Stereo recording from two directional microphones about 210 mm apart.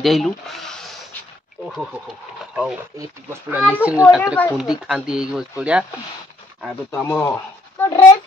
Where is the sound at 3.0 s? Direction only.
10° right (ahead or behind).